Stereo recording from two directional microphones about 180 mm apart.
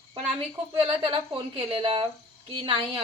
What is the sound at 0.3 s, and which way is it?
A woman's voice, 30° right (ahead or behind).